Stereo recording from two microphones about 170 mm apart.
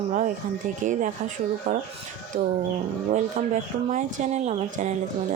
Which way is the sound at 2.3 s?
50° right (ahead or behind).